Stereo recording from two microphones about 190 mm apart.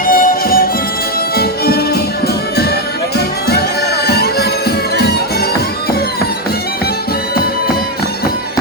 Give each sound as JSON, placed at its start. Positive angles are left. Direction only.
{"t": 0.1, "sound": "music", "side_deg": 50}
{"t": 4.0, "sound": "music", "side_deg": 55}